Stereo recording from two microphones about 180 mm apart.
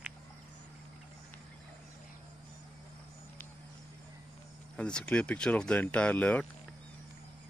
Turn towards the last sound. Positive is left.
turn(degrees=10)  # may be behind; listen again after turning